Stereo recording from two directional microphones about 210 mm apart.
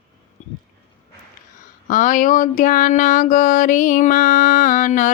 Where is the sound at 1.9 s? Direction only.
40° left (ahead or behind).